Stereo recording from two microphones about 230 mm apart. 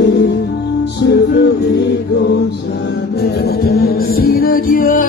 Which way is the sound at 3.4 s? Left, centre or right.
Left.